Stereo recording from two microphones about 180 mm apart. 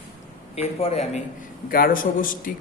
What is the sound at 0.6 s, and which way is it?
Speech, 35° left (ahead or behind).